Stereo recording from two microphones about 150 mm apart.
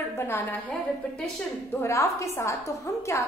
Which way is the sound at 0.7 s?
5° left (ahead or behind).